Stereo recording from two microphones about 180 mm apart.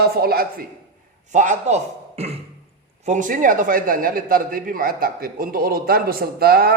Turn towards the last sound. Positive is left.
turn(degrees=-55)  # may be behind; listen again after turning